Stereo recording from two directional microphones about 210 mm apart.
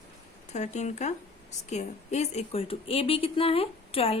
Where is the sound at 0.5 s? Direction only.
35° left (ahead or behind).